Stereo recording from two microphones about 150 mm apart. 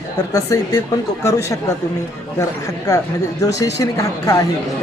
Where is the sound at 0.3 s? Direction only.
25° left (ahead or behind).